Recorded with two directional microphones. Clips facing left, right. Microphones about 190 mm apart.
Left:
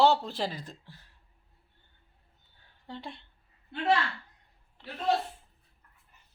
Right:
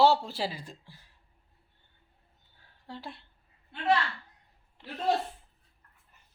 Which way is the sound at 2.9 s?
5° right (ahead or behind).